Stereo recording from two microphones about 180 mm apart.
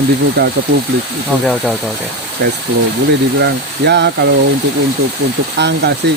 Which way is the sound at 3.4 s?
75° right (ahead or behind).